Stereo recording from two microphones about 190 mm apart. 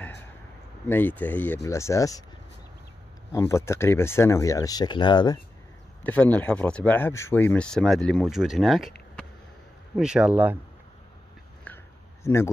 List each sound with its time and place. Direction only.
0.8 s speech: 10° left (ahead or behind)
3.3 s speech: 15° left (ahead or behind)
6.0 s speech: 10° left (ahead or behind); by 10.6 s 10° right (ahead or behind)
11.6 s a sound: 10° left (ahead or behind)